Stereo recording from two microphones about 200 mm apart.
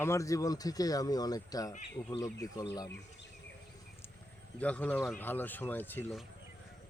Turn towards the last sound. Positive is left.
turn(degrees=10)  # may be behind; listen again after turning